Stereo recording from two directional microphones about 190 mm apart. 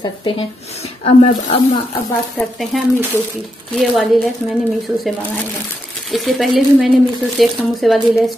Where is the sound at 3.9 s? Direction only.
Centre (ahead or behind).